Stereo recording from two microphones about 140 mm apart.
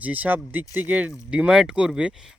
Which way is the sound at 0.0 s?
10° right (ahead or behind).